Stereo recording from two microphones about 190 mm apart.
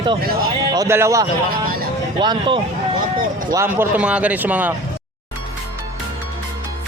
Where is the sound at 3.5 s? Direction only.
15° right (ahead or behind).